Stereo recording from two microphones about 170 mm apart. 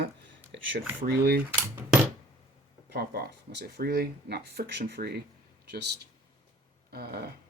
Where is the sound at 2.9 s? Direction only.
75° right (ahead or behind).